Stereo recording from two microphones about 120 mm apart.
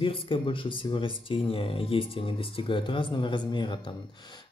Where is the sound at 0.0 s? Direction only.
45° left (ahead or behind).